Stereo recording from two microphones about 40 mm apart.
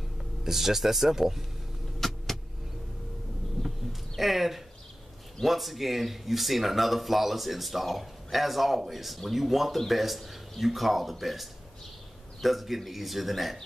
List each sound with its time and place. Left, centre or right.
0.4 s speech: centre
2.0 s vehicle: centre
3.6 s bird: centre
4.2 s speech: centre